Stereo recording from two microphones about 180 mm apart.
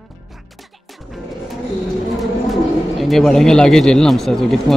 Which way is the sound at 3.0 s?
Centre (ahead or behind).